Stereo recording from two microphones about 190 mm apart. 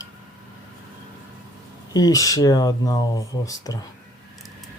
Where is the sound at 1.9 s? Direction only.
20° left (ahead or behind).